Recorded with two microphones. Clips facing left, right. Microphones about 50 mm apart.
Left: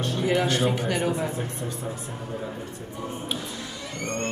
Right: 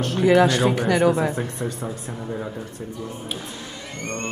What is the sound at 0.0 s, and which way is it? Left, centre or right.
Speech, right.